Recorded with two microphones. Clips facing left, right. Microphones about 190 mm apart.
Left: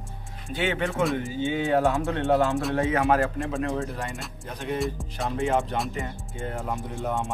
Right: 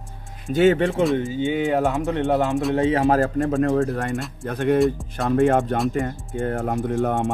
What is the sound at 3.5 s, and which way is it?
Speech, 55° right (ahead or behind).